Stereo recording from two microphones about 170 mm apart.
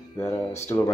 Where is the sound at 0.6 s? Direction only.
15° left (ahead or behind).